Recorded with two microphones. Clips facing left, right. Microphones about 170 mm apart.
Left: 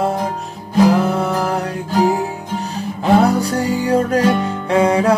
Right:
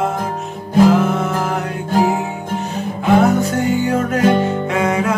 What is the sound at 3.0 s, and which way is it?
Music, 35° left (ahead or behind).